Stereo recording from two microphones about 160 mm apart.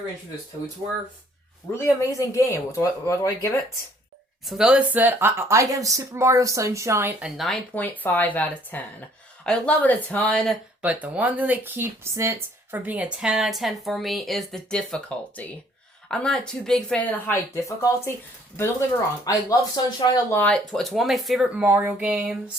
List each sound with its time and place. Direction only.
1.7 s speech: 20° left (ahead or behind)
4.4 s speech: 5° right (ahead or behind)
7.2 s speech: 5° right (ahead or behind)
10.8 s speech: 10° right (ahead or behind); by 18.1 s 20° left (ahead or behind)
19.2 s speech: 25° left (ahead or behind)
20.4 s speech: 5° left (ahead or behind)